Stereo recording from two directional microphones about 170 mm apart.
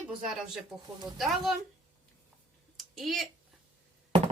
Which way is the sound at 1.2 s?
Centre (ahead or behind).